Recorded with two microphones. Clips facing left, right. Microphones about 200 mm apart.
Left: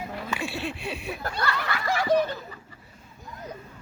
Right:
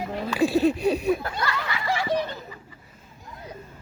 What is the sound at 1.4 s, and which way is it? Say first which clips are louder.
Snicker: even; 55° left (ahead or behind).